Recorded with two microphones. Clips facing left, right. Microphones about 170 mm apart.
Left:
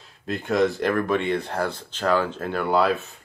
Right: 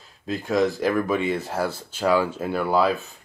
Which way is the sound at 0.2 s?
Centre (ahead or behind).